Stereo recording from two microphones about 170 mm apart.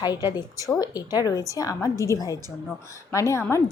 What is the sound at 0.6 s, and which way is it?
Speech, 15° right (ahead or behind).